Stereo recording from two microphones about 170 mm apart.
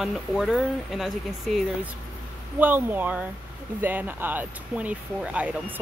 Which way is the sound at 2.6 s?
10° right (ahead or behind).